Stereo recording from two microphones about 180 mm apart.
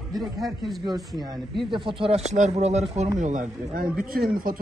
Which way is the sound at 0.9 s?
20° right (ahead or behind).